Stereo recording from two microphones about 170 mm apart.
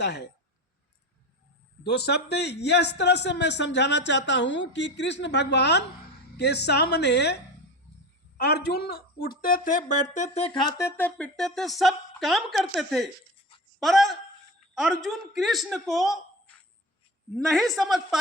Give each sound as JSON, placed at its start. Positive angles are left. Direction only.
{"t": 0.0, "sound": "a woman's voice", "side_deg": 85}
{"t": 1.8, "sound": "a man's voice", "side_deg": 75}